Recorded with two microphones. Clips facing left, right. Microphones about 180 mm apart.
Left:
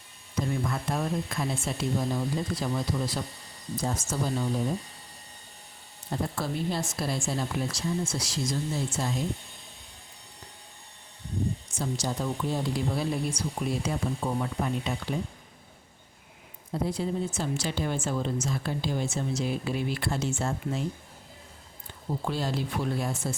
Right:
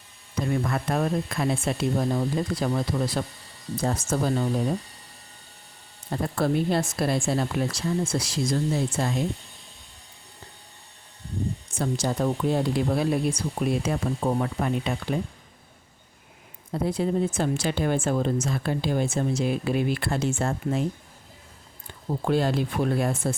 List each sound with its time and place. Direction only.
0.5 s speech: 65° right (ahead or behind)
6.1 s speech: 60° right (ahead or behind)
11.7 s speech: 60° right (ahead or behind)
17.0 s speech: 60° right (ahead or behind)
22.2 s speech: 55° right (ahead or behind)